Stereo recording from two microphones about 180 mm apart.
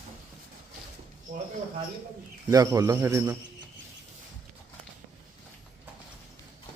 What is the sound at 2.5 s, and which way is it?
Speech, 20° right (ahead or behind).